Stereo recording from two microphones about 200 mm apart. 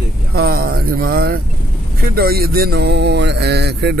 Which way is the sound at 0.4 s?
50° right (ahead or behind).